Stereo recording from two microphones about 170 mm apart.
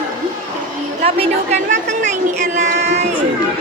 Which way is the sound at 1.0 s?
40° right (ahead or behind).